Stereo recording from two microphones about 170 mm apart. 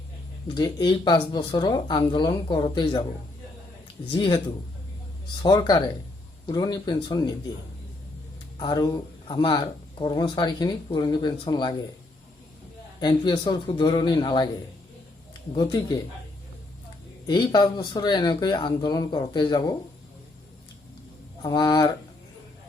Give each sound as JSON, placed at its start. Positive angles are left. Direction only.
{"t": 0.4, "sound": "speech", "side_deg": 25}
{"t": 4.1, "sound": "speech", "side_deg": 25}
{"t": 8.5, "sound": "speech", "side_deg": 20}
{"t": 13.0, "sound": "speech", "side_deg": 25}
{"t": 17.2, "sound": "speech", "side_deg": 25}
{"t": 21.4, "sound": "speech", "side_deg": 25}